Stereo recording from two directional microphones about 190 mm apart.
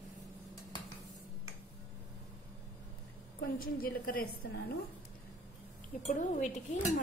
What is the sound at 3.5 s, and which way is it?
Speech, 50° left (ahead or behind).